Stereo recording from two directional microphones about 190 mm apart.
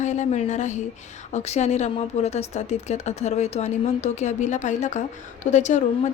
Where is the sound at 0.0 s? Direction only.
40° left (ahead or behind).